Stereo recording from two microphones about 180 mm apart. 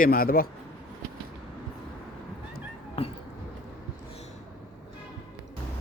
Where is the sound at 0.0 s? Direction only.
55° left (ahead or behind).